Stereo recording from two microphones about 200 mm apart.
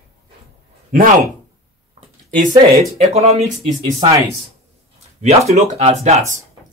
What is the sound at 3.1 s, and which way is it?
Speech, 30° right (ahead or behind).